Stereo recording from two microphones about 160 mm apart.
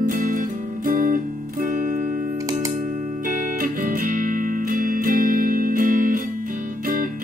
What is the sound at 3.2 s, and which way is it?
Music, 55° right (ahead or behind).